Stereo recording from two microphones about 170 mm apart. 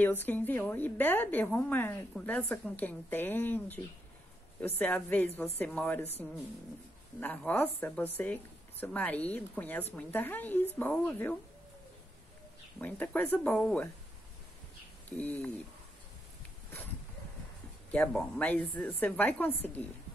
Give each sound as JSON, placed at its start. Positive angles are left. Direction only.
{"t": 0.0, "sound": "a woman's voice", "side_deg": 10}
{"t": 7.2, "sound": "a woman's voice", "side_deg": 10}
{"t": 12.7, "sound": "a woman's voice", "side_deg": 10}
{"t": 15.0, "sound": "a woman's voice", "side_deg": 10}
{"t": 17.9, "sound": "a woman's voice", "side_deg": 5}